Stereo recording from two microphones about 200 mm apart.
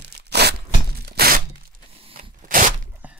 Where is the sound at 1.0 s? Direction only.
50° right (ahead or behind).